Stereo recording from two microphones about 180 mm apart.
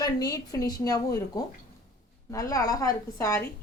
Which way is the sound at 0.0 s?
20° left (ahead or behind).